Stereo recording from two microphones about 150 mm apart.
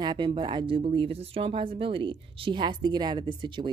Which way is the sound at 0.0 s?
30° right (ahead or behind).